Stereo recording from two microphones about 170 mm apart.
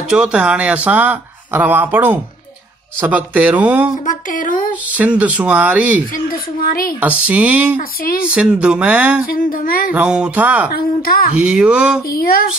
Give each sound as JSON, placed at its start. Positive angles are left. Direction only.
{"t": 0.1, "sound": "speech", "side_deg": -5}
{"t": 4.0, "sound": "speech", "side_deg": 50}
{"t": 4.8, "sound": "speech", "side_deg": -10}
{"t": 6.3, "sound": "speech", "side_deg": 60}
{"t": 7.0, "sound": "speech", "side_deg": -10}
{"t": 9.3, "sound": "speech", "side_deg": 55}
{"t": 9.9, "sound": "speech", "side_deg": -5}
{"t": 10.7, "sound": "speech", "side_deg": 60}
{"t": 11.3, "sound": "speech", "side_deg": -5}
{"t": 12.1, "sound": "speech", "side_deg": 60}